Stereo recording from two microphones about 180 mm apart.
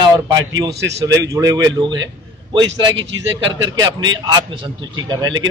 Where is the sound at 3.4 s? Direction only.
20° right (ahead or behind).